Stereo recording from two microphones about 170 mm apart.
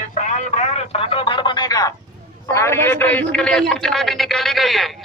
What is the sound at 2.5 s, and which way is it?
A man's voice, 15° left (ahead or behind).